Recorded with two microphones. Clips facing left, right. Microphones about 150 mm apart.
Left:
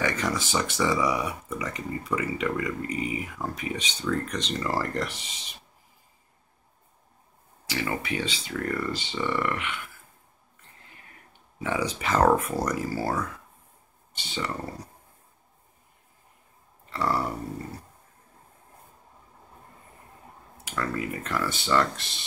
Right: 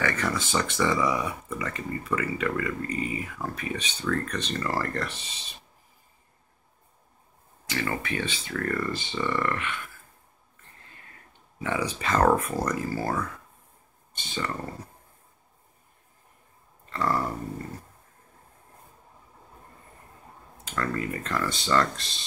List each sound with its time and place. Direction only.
0.0 s speech: 20° left (ahead or behind)
7.6 s speech: 15° left (ahead or behind)
11.6 s speech: 15° left (ahead or behind)
14.3 s speech: 10° left (ahead or behind)
16.9 s speech: 10° left (ahead or behind)
20.6 s speech: 10° left (ahead or behind)